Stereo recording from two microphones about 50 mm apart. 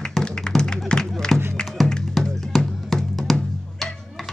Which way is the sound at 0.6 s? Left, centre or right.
Centre.